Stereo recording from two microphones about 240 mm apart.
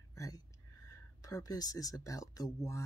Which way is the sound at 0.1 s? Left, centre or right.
Centre.